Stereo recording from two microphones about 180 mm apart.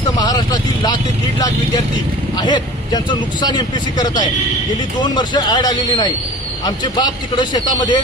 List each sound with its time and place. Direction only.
0.1 s vehicle: 20° left (ahead or behind)
2.3 s speech: 25° left (ahead or behind)